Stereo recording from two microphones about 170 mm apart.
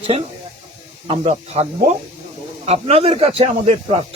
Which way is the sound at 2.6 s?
35° right (ahead or behind).